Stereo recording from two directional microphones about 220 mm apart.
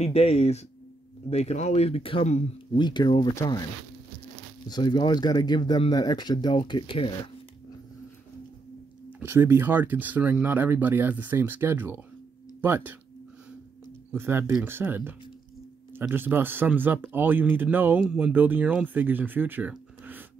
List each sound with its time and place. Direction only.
0.0 s speech: 30° left (ahead or behind)
4.6 s speech: 20° left (ahead or behind)
9.2 s speech: 10° right (ahead or behind)
14.1 s speech: 10° right (ahead or behind)